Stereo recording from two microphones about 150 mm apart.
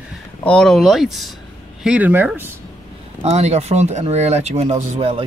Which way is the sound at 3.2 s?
45° right (ahead or behind).